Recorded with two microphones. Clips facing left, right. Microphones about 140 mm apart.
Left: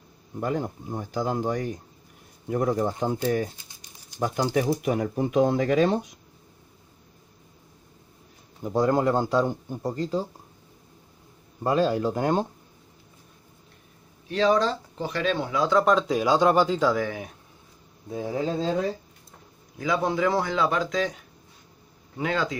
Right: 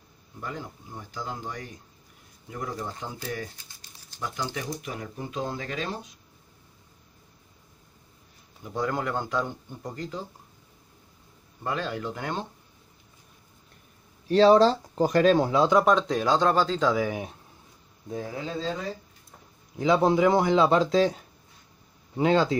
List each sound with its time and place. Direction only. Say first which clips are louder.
0.4 s speech: left 9 dB; 50° left (ahead or behind)
4.2 s speech: left 9 dB; 45° left (ahead or behind)
8.6 s speech: left 7 dB; 35° left (ahead or behind)
11.6 s speech: left 8 dB; 35° left (ahead or behind)
14.2 s speech: right 5 dB; 35° right (ahead or behind)
15.8 s speech: left 1 dB; centre (ahead or behind)
18.0 s speech: left 2 dB; 10° left (ahead or behind)
18.3 s speech: left 9 dB; 40° left (ahead or behind)
19.8 s speech: right 4 dB; 25° right (ahead or behind)